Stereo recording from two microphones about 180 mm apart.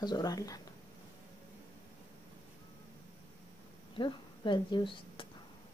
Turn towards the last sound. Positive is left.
turn(degrees=30)  # may be behind; listen again after turning